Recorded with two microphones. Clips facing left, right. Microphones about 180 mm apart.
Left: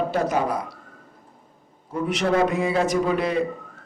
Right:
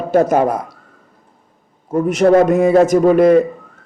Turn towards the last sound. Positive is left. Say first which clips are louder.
# right 12 dB
turn(degrees=-50)  # may be behind; listen again after turning